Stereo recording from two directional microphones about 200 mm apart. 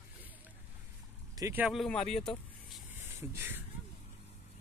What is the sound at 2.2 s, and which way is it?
Vehicle, 5° left (ahead or behind).